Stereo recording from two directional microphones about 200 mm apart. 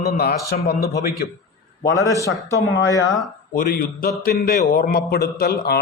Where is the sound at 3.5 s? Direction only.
45° left (ahead or behind).